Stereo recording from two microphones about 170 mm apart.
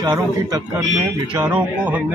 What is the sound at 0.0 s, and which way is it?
Speech, 25° right (ahead or behind).